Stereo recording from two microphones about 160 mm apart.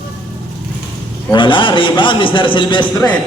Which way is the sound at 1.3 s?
30° left (ahead or behind).